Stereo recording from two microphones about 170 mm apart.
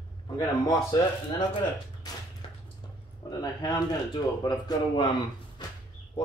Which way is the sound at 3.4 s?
25° left (ahead or behind).